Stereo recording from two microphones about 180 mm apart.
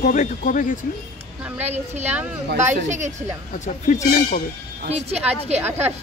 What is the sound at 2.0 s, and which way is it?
Speech, 10° right (ahead or behind).